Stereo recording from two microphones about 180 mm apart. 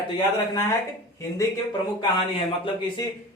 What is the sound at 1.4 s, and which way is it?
Speech, 20° left (ahead or behind).